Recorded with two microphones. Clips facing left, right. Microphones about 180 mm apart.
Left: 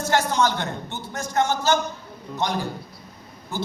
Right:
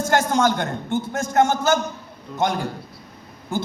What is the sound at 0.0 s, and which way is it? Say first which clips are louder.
A man's voice: right 2 dB; 50° right (ahead or behind).